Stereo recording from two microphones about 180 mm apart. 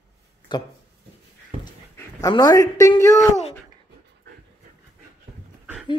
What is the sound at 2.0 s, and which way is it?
A man's voice, 20° left (ahead or behind).